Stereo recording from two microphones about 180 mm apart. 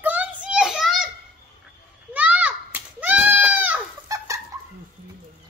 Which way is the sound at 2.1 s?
10° right (ahead or behind).